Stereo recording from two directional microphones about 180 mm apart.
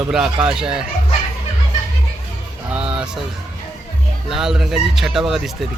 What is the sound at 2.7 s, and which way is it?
Speech, 5° right (ahead or behind).